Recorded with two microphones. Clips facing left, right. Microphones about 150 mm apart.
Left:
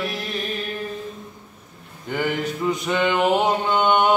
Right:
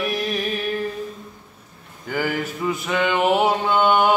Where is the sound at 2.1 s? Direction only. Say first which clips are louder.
Even; 5° right (ahead or behind).